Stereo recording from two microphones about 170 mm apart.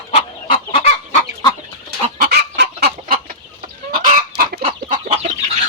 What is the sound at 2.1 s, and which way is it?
Chicken, 65° right (ahead or behind).